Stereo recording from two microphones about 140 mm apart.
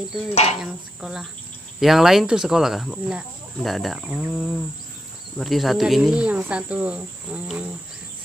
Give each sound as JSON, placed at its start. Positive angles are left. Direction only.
{"t": 0.3, "sound": "speech", "side_deg": 50}
{"t": 0.6, "sound": "speech", "side_deg": -5}
{"t": 5.4, "sound": "cricket", "side_deg": 0}